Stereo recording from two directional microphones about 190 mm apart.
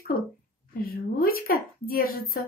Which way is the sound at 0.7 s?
50° left (ahead or behind).